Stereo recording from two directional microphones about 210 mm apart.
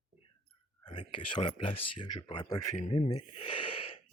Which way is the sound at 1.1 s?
25° left (ahead or behind).